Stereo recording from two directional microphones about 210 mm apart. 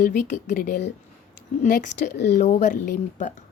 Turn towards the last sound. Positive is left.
turn(degrees=40)  # may be behind; listen again after turning